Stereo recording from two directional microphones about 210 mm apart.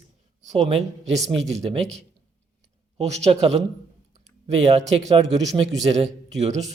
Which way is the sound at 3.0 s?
30° right (ahead or behind).